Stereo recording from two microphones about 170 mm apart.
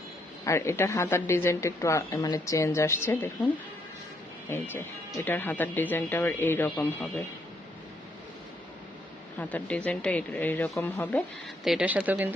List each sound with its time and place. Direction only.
0.4 s speech: 15° left (ahead or behind)
4.7 s speech: 15° left (ahead or behind)
9.4 s speech: 10° left (ahead or behind)
11.6 s speech: 5° right (ahead or behind)